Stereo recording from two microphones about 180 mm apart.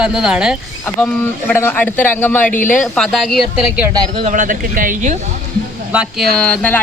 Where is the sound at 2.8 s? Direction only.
Centre (ahead or behind).